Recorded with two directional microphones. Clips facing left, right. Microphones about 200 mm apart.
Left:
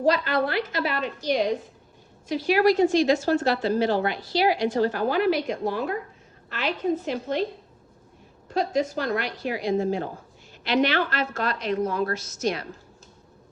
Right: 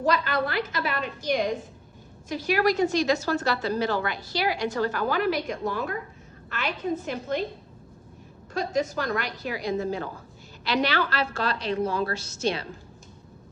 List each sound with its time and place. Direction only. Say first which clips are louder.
0.0 s a woman's voice: left 3 dB; 45° right (ahead or behind)
8.5 s a woman's voice: left 2 dB; 45° right (ahead or behind); by 12.6 s 30° right (ahead or behind)